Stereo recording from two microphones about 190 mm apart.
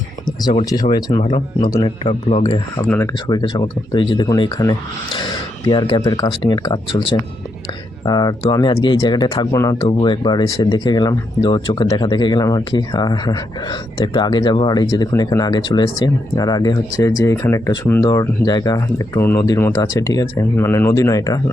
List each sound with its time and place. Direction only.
0.3 s speech: 20° left (ahead or behind)